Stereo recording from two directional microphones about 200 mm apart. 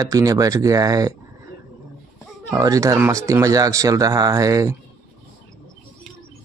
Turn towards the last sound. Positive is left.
turn(degrees=-15)  # may be behind; listen again after turning